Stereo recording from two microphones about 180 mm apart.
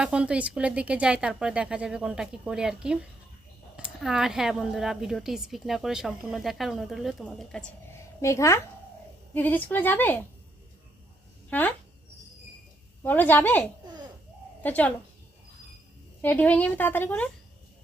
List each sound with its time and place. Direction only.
0.0 s a woman's voice: 5° right (ahead or behind)
8.2 s a woman's voice: 15° left (ahead or behind)
11.5 s a woman's voice: 10° left (ahead or behind)
13.0 s a woman's voice: 10° left (ahead or behind)
16.2 s a woman's voice: 10° left (ahead or behind)